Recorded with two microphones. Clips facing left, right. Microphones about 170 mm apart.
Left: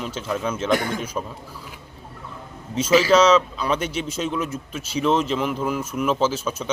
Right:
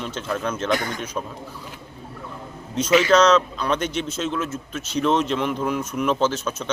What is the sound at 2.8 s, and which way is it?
Speech, 30° left (ahead or behind).